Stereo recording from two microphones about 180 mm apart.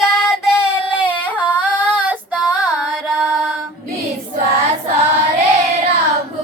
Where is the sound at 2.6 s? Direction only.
5° left (ahead or behind).